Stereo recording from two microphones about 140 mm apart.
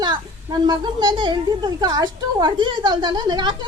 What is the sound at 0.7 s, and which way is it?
A woman's voice, 30° right (ahead or behind).